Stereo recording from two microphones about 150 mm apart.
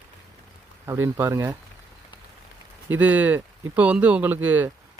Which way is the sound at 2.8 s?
10° right (ahead or behind).